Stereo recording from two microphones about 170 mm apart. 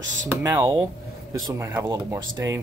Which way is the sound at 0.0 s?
90° right.